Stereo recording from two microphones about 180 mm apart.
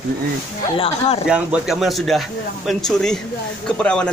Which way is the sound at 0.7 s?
35° left (ahead or behind).